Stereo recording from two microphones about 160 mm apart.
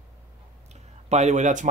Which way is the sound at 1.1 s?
45° right (ahead or behind).